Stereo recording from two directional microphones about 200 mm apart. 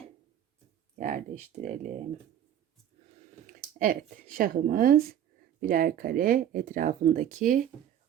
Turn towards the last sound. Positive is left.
turn(degrees=-40)  # may be behind; listen again after turning